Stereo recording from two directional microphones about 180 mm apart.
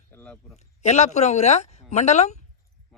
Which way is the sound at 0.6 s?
40° left (ahead or behind).